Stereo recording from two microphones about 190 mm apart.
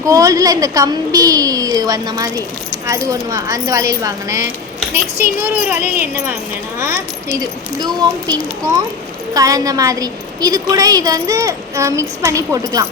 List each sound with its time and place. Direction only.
0.0 s a woman's voice: 15° right (ahead or behind)